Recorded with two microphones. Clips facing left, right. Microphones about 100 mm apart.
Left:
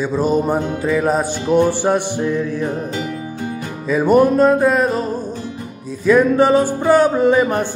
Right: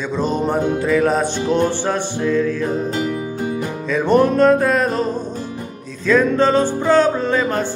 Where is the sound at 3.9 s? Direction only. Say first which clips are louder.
Left 2 dB; 10° left (ahead or behind).